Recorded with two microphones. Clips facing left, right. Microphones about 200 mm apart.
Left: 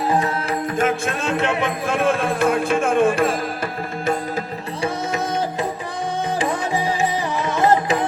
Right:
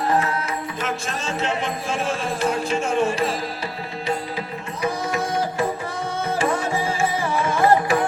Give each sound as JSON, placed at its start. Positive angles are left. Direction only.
{"t": 0.8, "sound": "speech", "side_deg": 55}
{"t": 4.8, "sound": "music", "side_deg": 20}